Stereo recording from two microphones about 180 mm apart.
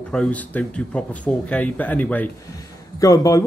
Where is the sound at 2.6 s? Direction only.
20° left (ahead or behind).